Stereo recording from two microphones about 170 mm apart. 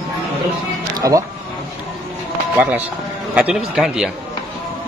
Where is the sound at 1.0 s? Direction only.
20° right (ahead or behind).